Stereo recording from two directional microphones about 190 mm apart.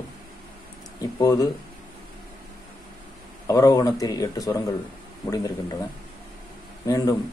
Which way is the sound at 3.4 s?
15° left (ahead or behind).